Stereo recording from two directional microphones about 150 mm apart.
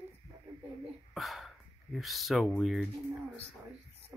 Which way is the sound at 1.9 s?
Centre (ahead or behind).